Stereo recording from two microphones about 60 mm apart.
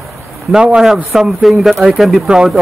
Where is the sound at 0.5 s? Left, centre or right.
Centre.